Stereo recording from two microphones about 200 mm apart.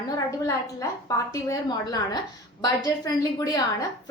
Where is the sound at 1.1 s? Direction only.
20° left (ahead or behind).